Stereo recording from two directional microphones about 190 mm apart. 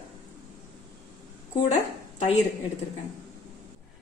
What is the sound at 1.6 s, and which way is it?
Speech, 35° left (ahead or behind).